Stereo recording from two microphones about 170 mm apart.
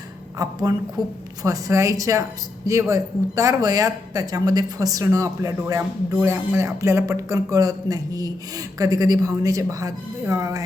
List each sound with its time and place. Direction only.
0.3 s a woman's voice: 20° right (ahead or behind)